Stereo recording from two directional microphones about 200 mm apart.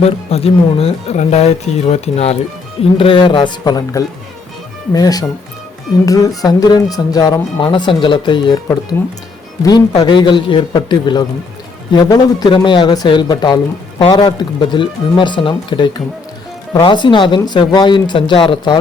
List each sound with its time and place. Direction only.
0.0 s speech: 30° left (ahead or behind)
9.6 s speech: 20° left (ahead or behind)